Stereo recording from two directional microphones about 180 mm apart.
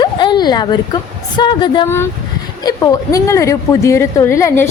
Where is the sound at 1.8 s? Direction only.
15° left (ahead or behind).